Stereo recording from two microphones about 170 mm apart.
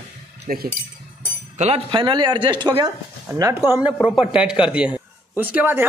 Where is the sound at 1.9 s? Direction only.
25° right (ahead or behind).